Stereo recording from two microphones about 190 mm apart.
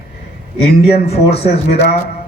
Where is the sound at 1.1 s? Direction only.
30° left (ahead or behind).